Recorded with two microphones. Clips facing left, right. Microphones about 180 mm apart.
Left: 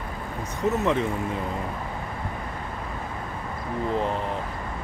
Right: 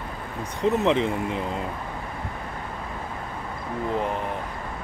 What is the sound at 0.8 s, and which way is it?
Speech, 20° right (ahead or behind).